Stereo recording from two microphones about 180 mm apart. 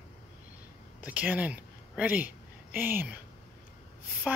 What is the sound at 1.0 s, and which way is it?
Speech, 10° right (ahead or behind).